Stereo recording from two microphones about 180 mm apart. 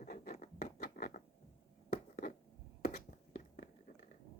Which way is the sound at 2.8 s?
50° left (ahead or behind).